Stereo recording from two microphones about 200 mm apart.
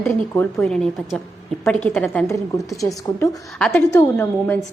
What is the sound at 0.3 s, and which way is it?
A woman's voice, 5° left (ahead or behind).